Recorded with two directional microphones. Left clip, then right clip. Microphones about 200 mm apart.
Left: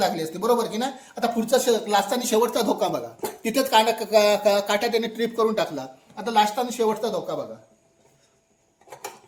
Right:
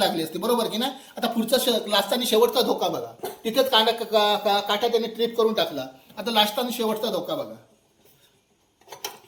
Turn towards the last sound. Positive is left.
turn(degrees=30)  # may be behind; listen again after turning